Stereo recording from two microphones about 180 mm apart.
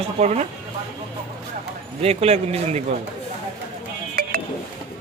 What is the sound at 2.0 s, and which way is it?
Speech, 35° right (ahead or behind).